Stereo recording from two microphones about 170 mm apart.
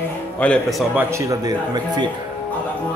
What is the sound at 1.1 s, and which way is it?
Speech, 20° right (ahead or behind).